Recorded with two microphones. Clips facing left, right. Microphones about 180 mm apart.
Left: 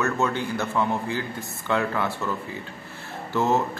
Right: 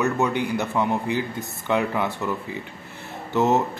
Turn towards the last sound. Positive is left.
turn(degrees=-20)  # may be behind; listen again after turning